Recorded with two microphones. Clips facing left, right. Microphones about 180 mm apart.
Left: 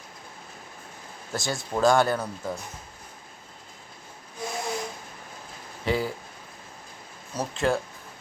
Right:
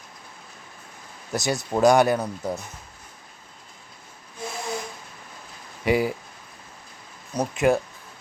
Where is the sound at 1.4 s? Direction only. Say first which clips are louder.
Right 4 dB; 20° right (ahead or behind).